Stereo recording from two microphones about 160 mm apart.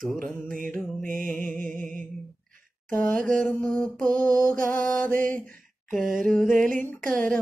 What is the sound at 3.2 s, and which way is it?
Mantra, centre (ahead or behind).